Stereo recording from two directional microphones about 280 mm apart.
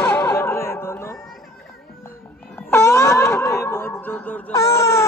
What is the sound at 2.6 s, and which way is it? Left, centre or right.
Snicker, centre.